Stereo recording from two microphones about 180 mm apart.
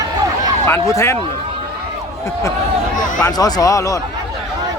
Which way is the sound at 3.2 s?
20° left (ahead or behind).